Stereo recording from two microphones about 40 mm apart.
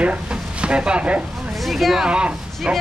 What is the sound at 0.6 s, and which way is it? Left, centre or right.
Speech, right.